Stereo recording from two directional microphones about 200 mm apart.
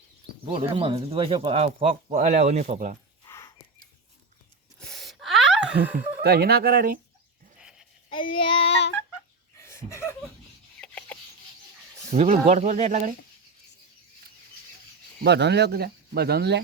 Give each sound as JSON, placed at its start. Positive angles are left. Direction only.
{"t": 0.7, "sound": "speech", "side_deg": -25}
{"t": 3.2, "sound": "a sound", "side_deg": 15}
{"t": 4.8, "sound": "gasp", "side_deg": 0}
{"t": 6.2, "sound": "speech", "side_deg": -50}
{"t": 7.6, "sound": "sheep", "side_deg": -5}
{"t": 8.1, "sound": "child singing", "side_deg": 25}
{"t": 9.6, "sound": "chuckle", "side_deg": 15}
{"t": 10.8, "sound": "a sound", "side_deg": 5}
{"t": 12.1, "sound": "speech", "side_deg": -35}
{"t": 15.2, "sound": "speech", "side_deg": -60}